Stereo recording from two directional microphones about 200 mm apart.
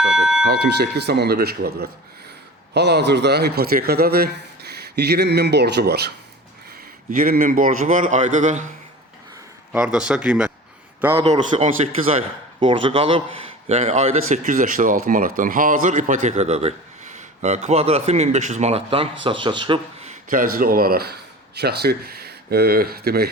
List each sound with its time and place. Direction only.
0.0 s a sound: 5° right (ahead or behind)
0.4 s a man's voice: 55° right (ahead or behind); by 8.6 s 40° right (ahead or behind)
9.7 s speech: 5° right (ahead or behind)
11.2 s a man's voice: 30° right (ahead or behind)
20.3 s speech: 45° right (ahead or behind)